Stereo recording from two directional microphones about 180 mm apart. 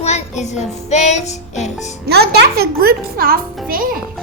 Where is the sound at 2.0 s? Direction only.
65° right (ahead or behind).